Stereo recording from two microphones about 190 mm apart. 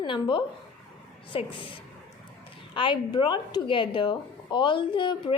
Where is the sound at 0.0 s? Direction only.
25° left (ahead or behind).